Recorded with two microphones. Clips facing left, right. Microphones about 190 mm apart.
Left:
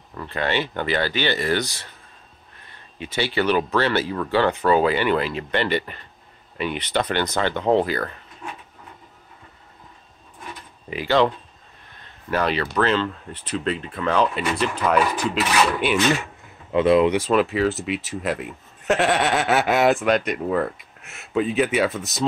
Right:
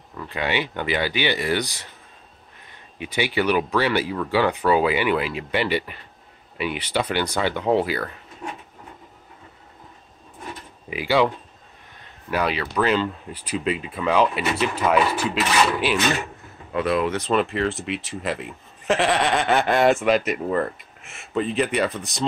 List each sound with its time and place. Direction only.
0.3 s speech: 10° right (ahead or behind)
3.0 s speech: 15° right (ahead or behind)
10.9 s speech: 10° right (ahead or behind)
16.7 s speech: 25° left (ahead or behind)
17.1 s speech: 5° left (ahead or behind)